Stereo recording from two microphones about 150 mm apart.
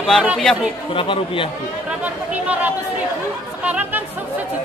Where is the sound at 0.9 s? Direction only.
35° left (ahead or behind).